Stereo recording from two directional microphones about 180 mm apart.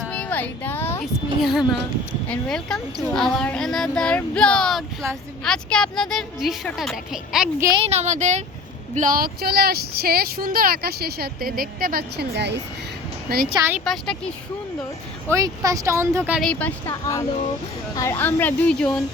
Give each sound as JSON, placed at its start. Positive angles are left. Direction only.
{"t": 0.0, "sound": "a sound", "side_deg": 5}
{"t": 1.4, "sound": "speech", "side_deg": 0}
{"t": 7.6, "sound": "a woman's voice", "side_deg": -20}
{"t": 7.9, "sound": "speech", "side_deg": -40}
{"t": 13.2, "sound": "speech", "side_deg": -55}
{"t": 13.6, "sound": "speech", "side_deg": -10}
{"t": 13.8, "sound": "speech", "side_deg": 0}
{"t": 15.3, "sound": "speech", "side_deg": -20}
{"t": 16.4, "sound": "a woman's voice", "side_deg": 5}